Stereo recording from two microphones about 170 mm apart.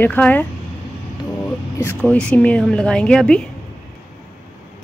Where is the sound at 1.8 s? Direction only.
10° left (ahead or behind).